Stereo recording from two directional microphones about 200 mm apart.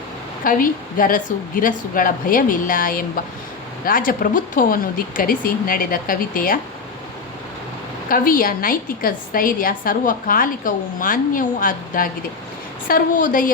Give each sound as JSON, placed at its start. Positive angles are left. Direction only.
{"t": 0.4, "sound": "a woman's voice", "side_deg": 45}
{"t": 8.1, "sound": "a woman's voice", "side_deg": 45}